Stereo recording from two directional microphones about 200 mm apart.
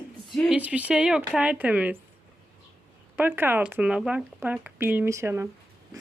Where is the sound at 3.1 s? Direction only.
10° right (ahead or behind).